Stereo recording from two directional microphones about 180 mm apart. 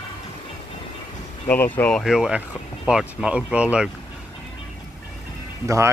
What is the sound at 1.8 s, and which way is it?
Speech, 5° left (ahead or behind).